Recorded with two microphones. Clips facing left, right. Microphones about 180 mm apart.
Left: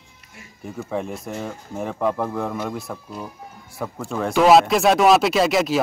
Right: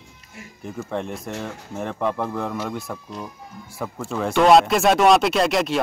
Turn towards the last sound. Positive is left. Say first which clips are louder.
# left 1 dB
turn(degrees=0)  # may be behind; listen again after turning